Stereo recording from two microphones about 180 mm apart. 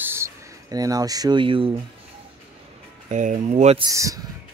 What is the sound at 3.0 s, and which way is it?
Speech, 45° right (ahead or behind).